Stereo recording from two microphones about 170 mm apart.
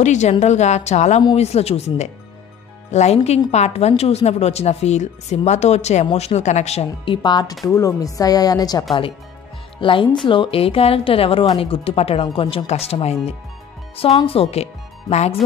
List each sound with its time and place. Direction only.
0.0 s a woman's voice: 45° left (ahead or behind)